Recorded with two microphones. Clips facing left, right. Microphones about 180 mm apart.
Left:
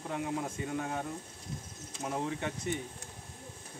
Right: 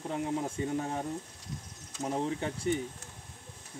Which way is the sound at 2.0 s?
30° right (ahead or behind).